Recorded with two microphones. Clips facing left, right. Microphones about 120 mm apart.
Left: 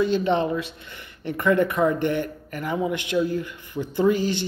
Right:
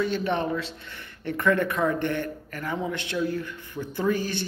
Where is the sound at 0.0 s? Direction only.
20° left (ahead or behind).